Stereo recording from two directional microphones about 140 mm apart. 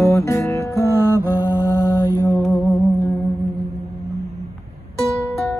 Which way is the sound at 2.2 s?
15° left (ahead or behind).